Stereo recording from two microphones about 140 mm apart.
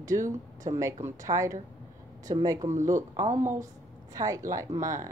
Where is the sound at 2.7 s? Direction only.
65° right (ahead or behind).